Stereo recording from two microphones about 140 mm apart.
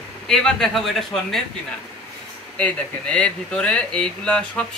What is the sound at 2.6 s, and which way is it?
Speech, 10° left (ahead or behind).